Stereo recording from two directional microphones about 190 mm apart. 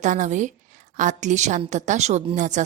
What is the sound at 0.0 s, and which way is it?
A woman's voice, 40° right (ahead or behind).